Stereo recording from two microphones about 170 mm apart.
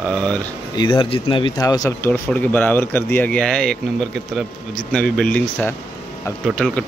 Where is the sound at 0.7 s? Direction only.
30° left (ahead or behind).